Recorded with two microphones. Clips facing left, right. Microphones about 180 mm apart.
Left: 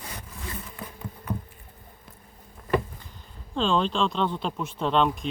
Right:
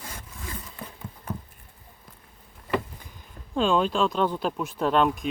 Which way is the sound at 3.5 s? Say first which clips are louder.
Right 2 dB; 10° right (ahead or behind).